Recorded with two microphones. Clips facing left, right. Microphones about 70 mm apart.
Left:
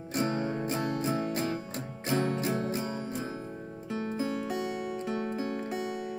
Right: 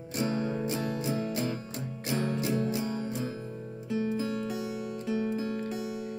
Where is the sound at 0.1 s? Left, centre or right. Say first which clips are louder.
Even; left.